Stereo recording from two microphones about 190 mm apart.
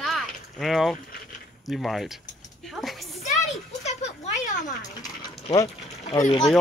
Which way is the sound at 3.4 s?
35° left (ahead or behind).